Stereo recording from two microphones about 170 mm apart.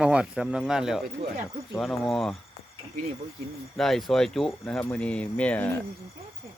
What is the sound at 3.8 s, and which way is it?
Speech, centre (ahead or behind).